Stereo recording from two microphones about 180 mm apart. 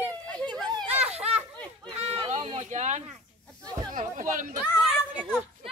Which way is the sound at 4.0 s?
45° right (ahead or behind).